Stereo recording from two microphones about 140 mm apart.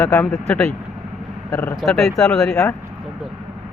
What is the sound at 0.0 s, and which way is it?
Speech, 15° left (ahead or behind).